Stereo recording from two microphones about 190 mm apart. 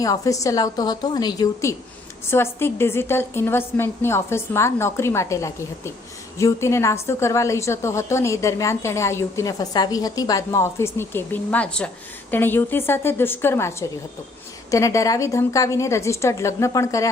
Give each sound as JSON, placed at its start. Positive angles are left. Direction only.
{"t": 0.0, "sound": "a woman's voice", "side_deg": 20}